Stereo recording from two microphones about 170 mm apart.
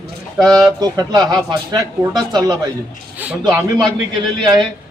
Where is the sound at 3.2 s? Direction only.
10° right (ahead or behind).